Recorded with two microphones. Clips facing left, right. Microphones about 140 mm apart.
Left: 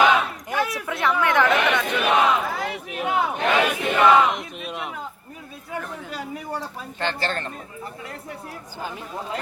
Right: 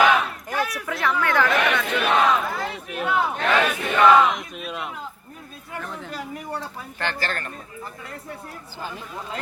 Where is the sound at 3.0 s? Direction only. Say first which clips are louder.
Even; 15° left (ahead or behind).